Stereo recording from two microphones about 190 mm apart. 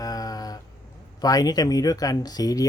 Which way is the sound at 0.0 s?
20° left (ahead or behind).